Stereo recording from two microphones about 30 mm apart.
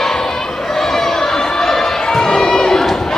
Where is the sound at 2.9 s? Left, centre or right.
Centre.